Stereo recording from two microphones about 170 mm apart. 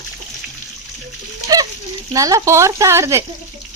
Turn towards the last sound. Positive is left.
turn(degrees=-15)  # may be behind; listen again after turning